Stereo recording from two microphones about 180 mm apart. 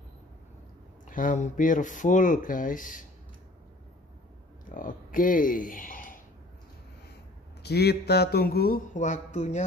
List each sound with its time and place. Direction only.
1.0 s speech: 45° left (ahead or behind)
4.6 s speech: 50° left (ahead or behind)
7.6 s speech: 65° left (ahead or behind); by 9.7 s 40° left (ahead or behind)